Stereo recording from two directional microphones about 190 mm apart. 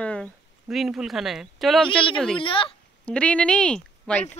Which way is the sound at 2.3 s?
25° left (ahead or behind).